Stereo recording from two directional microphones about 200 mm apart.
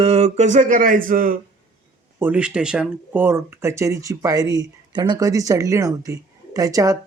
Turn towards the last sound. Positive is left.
turn(degrees=-15)  # may be behind; listen again after turning